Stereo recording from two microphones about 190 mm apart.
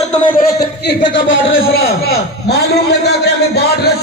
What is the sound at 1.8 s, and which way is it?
A man's voice, 55° left (ahead or behind).